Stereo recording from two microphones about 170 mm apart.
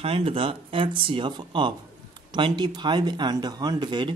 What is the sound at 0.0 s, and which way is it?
Speech, 35° right (ahead or behind).